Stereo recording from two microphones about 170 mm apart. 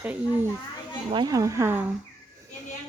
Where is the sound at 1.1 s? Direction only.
25° right (ahead or behind).